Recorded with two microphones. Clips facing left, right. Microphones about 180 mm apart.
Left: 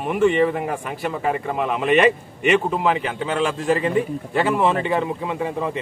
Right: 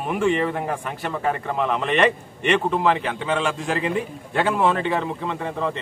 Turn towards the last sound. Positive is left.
turn(degrees=10)  # may be behind; listen again after turning